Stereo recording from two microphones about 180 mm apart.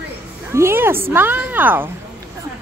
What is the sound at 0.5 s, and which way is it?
Speech, 10° right (ahead or behind).